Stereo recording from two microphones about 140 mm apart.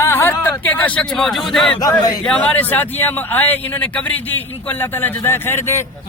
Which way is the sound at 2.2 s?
5° left (ahead or behind).